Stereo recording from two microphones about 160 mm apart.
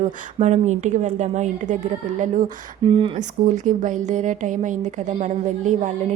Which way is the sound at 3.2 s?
50° right (ahead or behind).